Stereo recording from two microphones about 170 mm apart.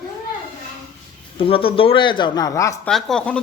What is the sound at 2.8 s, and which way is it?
Speech, 5° left (ahead or behind).